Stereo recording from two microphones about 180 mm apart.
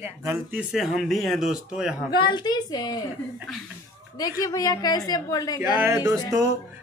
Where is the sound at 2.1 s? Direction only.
25° left (ahead or behind).